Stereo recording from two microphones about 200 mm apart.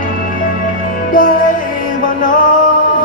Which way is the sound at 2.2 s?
40° left (ahead or behind).